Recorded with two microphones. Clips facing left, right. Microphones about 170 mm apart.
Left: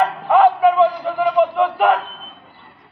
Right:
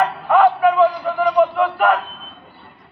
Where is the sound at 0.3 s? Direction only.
20° left (ahead or behind).